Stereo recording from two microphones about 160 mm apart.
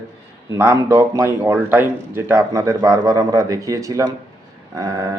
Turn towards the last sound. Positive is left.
turn(degrees=-20)  # may be behind; listen again after turning